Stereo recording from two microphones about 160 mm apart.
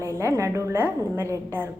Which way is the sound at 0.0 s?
15° right (ahead or behind).